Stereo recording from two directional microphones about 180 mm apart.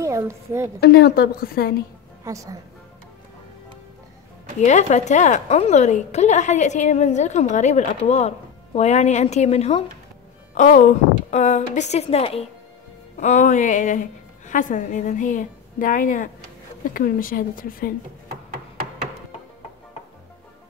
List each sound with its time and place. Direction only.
0.0 s a woman's voice: 15° right (ahead or behind)
0.7 s a woman's voice: 65° left (ahead or behind)
2.2 s a woman's voice: 20° right (ahead or behind)
4.6 s a woman's voice: 40° left (ahead or behind)